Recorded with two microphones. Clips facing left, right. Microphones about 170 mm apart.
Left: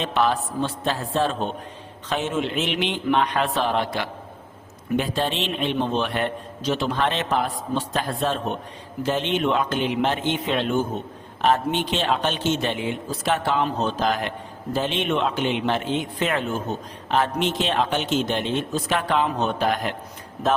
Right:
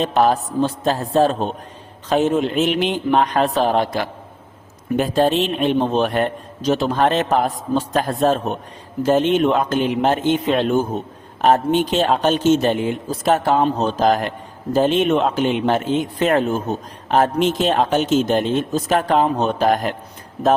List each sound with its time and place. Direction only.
0.0 s a man's voice: 40° right (ahead or behind)